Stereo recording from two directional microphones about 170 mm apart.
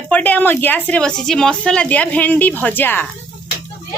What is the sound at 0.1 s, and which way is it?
A woman's voice, 10° left (ahead or behind).